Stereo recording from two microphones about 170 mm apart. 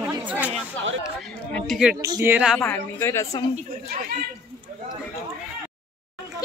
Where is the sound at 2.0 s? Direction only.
20° right (ahead or behind).